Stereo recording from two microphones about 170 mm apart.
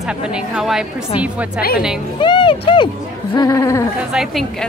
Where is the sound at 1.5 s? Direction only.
60° left (ahead or behind).